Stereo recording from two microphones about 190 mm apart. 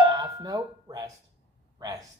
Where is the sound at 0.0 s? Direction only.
20° right (ahead or behind).